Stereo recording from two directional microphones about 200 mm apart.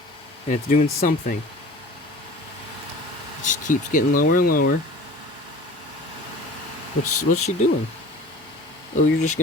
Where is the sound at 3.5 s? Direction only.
40° left (ahead or behind).